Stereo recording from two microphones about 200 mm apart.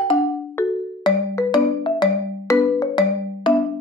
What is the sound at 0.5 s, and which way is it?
Music, 20° left (ahead or behind).